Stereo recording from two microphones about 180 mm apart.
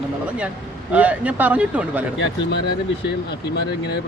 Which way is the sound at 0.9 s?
10° right (ahead or behind).